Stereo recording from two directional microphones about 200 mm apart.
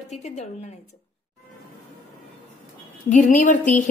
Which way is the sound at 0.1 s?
35° left (ahead or behind).